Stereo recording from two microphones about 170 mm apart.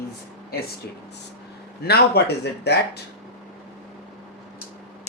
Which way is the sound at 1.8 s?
70° left (ahead or behind).